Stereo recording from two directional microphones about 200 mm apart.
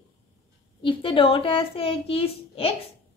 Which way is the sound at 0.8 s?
25° left (ahead or behind).